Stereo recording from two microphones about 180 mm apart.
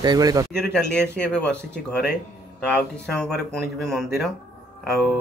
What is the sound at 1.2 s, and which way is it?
Speech, 5° left (ahead or behind).